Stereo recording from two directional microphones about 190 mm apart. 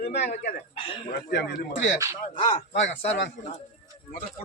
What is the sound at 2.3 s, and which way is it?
Speech, 30° left (ahead or behind).